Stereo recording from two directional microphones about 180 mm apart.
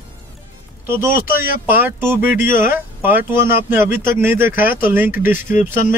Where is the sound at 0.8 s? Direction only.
15° right (ahead or behind).